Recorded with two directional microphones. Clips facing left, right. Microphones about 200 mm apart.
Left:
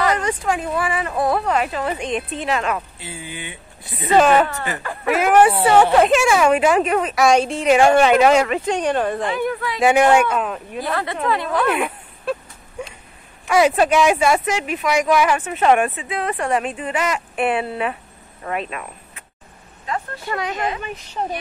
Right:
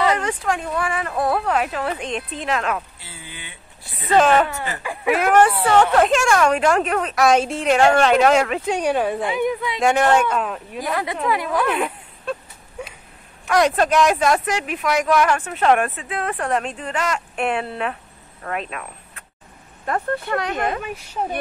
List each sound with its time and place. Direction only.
0.2 s speech: centre (ahead or behind)
3.0 s speech: 15° left (ahead or behind)
4.1 s a woman's voice: 5° left (ahead or behind); by 9.8 s 20° right (ahead or behind)
9.8 s speech: 10° left (ahead or behind)
10.8 s speech: 10° right (ahead or behind)
11.6 s a sound: 5° left (ahead or behind)
13.5 s speech: 5° left (ahead or behind)
20.2 s speech: centre (ahead or behind)
20.5 s speech: 55° right (ahead or behind)
20.8 s speech: 5° right (ahead or behind)